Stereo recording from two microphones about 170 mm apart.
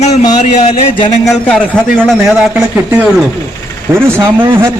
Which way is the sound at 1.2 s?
5° left (ahead or behind).